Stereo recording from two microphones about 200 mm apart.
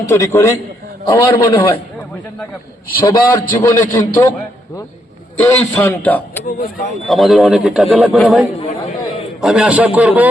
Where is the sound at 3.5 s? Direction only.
15° left (ahead or behind).